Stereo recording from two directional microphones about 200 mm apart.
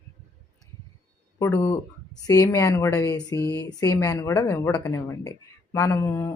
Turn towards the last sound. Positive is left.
turn(degrees=15)  # may be behind; listen again after turning